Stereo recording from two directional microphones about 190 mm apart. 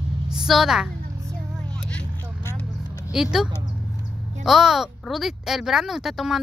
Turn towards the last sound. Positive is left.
turn(degrees=0)  # may be behind; listen again after turning